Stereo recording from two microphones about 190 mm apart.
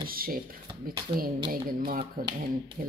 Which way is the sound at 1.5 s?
45° right (ahead or behind).